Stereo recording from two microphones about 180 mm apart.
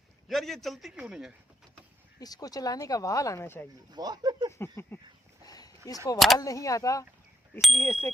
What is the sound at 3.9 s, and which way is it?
Speech, 20° right (ahead or behind).